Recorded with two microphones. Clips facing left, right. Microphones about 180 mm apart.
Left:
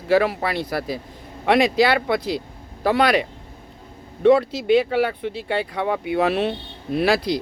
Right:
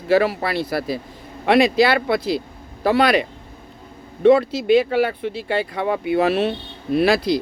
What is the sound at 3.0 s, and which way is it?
Speech, 10° left (ahead or behind).